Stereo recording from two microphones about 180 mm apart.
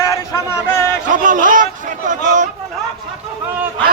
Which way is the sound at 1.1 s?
45° right (ahead or behind).